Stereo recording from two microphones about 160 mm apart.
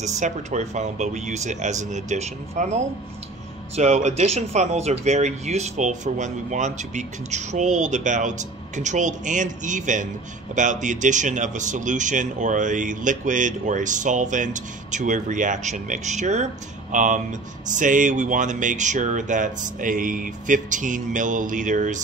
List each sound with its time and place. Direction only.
0.0 s speech: 45° right (ahead or behind)